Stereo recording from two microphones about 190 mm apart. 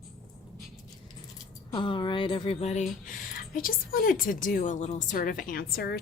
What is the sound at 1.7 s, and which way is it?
Speech, 25° left (ahead or behind).